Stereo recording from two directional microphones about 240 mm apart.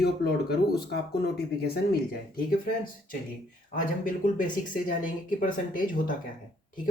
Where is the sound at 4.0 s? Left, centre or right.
Left.